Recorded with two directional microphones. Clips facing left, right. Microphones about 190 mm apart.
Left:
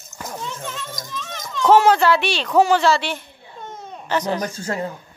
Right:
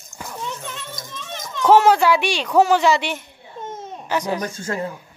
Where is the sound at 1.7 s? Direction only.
10° right (ahead or behind).